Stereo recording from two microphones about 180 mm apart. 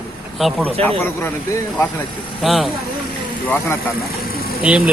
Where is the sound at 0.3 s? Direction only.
5° left (ahead or behind).